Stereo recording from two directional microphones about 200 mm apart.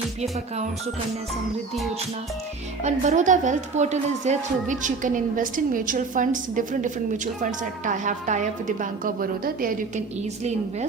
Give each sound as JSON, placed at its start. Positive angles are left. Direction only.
{"t": 2.8, "sound": "speech", "side_deg": -35}